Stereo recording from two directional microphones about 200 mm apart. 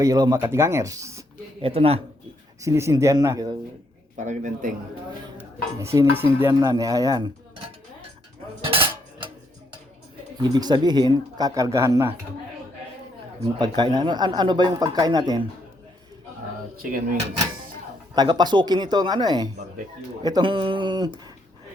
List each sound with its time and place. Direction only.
0.0 s dishes: 20° right (ahead or behind)
1.6 s speech: 30° right (ahead or behind)
2.6 s dishes: 15° right (ahead or behind)
4.2 s a man's voice: 40° right (ahead or behind)
5.4 s dishes: 15° right (ahead or behind)
8.6 s cutlery: 25° right (ahead or behind)
10.4 s speech: 20° right (ahead or behind)
13.6 s speech: 20° right (ahead or behind)
18.1 s speech: 20° right (ahead or behind)